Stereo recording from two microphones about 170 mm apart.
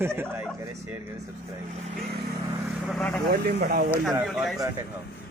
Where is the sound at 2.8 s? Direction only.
5° left (ahead or behind).